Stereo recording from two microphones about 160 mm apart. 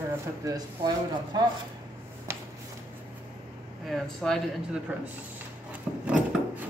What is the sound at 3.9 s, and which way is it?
Speech, 5° left (ahead or behind).